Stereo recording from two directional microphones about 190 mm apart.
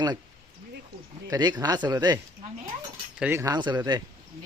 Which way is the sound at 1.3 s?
20° right (ahead or behind).